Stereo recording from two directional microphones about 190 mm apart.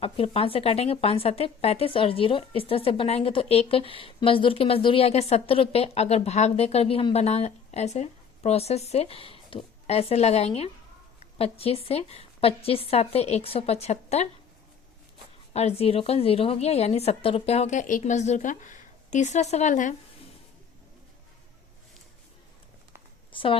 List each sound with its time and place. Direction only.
0.0 s a woman's voice: 30° left (ahead or behind)
15.5 s a woman's voice: 30° left (ahead or behind)
23.3 s speech: 25° left (ahead or behind)